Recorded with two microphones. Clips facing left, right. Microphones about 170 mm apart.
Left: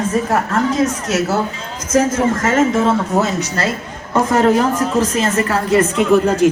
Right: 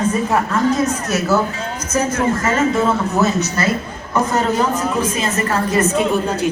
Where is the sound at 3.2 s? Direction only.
90° left.